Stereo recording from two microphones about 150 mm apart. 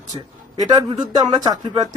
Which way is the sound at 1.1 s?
25° right (ahead or behind).